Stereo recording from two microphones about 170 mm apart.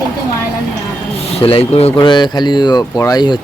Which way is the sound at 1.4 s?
35° left (ahead or behind).